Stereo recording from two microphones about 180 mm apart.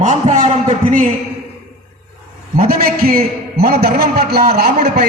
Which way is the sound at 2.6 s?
55° right (ahead or behind).